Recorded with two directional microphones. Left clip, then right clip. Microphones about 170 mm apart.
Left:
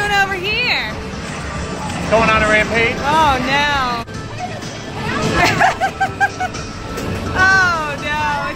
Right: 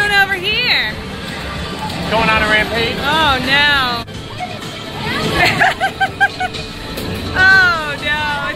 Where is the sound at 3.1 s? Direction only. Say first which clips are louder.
Right 2 dB; 10° left (ahead or behind).